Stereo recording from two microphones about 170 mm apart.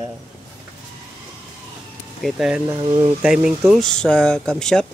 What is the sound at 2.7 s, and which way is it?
Speech, 25° right (ahead or behind).